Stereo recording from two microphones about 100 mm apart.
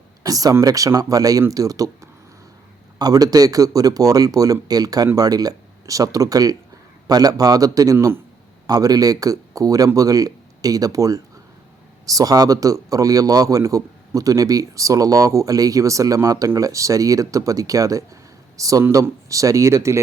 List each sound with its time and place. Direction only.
0.2 s a man's voice: 35° right (ahead or behind)
7.9 s speech: 25° right (ahead or behind)
8.6 s a man's voice: 40° right (ahead or behind)